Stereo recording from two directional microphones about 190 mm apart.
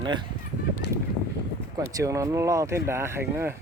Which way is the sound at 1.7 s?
15° right (ahead or behind).